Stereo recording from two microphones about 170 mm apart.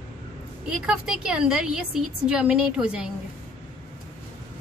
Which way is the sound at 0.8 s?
5° right (ahead or behind).